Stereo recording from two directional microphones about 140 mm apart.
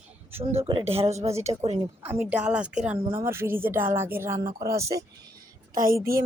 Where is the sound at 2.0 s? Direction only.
10° right (ahead or behind).